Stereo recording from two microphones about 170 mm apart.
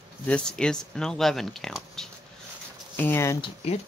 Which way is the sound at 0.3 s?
5° left (ahead or behind).